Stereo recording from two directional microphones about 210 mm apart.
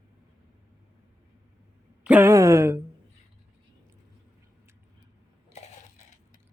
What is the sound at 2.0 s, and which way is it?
Speech, 10° right (ahead or behind).